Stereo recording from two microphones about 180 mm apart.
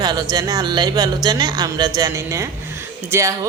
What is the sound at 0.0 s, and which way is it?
Speech, 20° right (ahead or behind).